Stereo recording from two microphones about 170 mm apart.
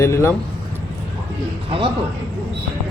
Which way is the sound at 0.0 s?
15° left (ahead or behind).